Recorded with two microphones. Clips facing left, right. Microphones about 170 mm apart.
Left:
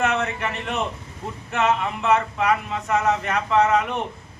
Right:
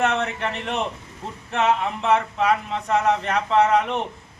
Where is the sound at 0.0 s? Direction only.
30° right (ahead or behind).